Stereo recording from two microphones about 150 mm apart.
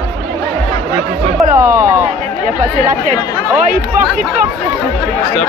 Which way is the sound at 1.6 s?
15° right (ahead or behind).